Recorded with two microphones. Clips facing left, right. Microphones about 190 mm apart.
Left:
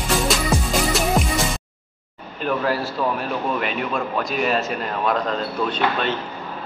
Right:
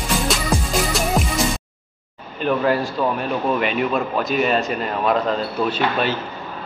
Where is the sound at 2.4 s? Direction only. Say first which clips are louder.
Right 3 dB; centre (ahead or behind).